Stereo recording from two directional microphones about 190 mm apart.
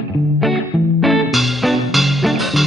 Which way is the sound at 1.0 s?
Centre (ahead or behind).